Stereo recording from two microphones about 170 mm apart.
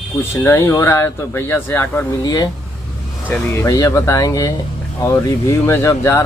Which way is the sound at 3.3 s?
15° left (ahead or behind).